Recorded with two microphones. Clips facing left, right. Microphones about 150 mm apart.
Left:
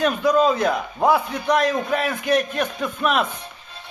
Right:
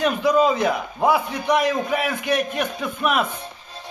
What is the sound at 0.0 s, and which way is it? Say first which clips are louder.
A man's voice: even; 10° right (ahead or behind).